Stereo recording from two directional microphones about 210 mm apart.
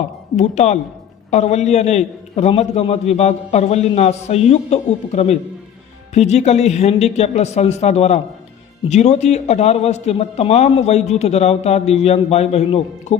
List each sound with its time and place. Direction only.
0.3 s a man's voice: 35° left (ahead or behind)